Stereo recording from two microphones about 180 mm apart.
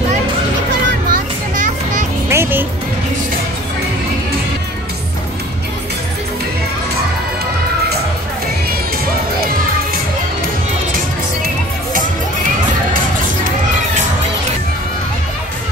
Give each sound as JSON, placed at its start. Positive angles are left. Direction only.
{"t": 1.1, "sound": "children playing", "side_deg": -45}
{"t": 2.2, "sound": "music", "side_deg": -15}